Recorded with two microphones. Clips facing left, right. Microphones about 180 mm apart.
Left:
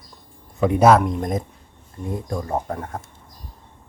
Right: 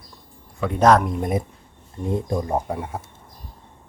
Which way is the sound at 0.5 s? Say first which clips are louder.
Left 6 dB; 20° left (ahead or behind).